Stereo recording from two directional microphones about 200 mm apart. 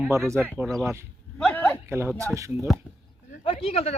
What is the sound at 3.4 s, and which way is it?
Speech, 30° left (ahead or behind).